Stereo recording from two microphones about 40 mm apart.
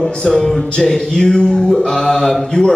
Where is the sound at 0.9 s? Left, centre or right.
Centre.